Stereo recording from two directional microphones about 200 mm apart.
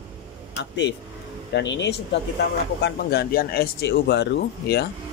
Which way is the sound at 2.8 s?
50° left (ahead or behind).